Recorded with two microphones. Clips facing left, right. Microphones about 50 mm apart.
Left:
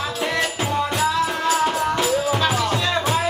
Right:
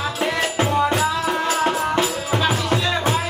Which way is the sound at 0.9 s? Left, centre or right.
Centre.